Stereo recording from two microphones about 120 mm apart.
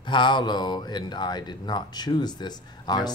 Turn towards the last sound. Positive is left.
turn(degrees=35)  # may be behind; listen again after turning